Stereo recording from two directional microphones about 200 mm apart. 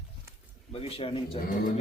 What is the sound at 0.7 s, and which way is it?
Speech, 30° left (ahead or behind).